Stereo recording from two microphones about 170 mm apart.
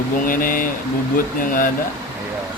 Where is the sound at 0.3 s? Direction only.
55° left (ahead or behind).